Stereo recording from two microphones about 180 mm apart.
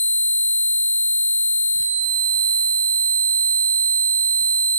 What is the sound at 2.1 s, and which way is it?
Fire alarm, 10° left (ahead or behind).